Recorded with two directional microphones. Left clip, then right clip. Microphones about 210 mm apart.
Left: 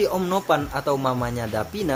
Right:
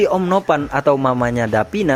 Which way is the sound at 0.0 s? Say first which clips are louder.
Right 7 dB; 40° right (ahead or behind).